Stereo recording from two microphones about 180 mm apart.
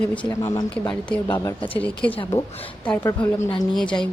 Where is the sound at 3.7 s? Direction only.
5° left (ahead or behind).